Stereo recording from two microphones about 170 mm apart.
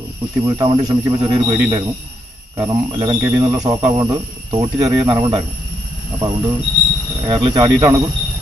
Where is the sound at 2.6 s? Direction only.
25° right (ahead or behind).